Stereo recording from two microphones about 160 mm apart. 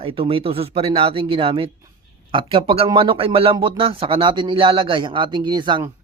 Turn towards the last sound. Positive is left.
turn(degrees=-30)  # may be behind; listen again after turning